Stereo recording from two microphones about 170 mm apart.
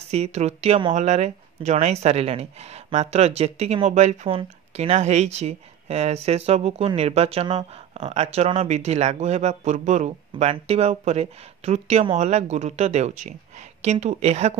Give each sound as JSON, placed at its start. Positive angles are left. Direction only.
{"t": 0.1, "sound": "speech", "side_deg": -40}
{"t": 10.3, "sound": "speech", "side_deg": -35}